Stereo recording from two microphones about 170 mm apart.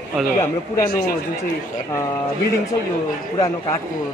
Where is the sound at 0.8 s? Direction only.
65° left (ahead or behind).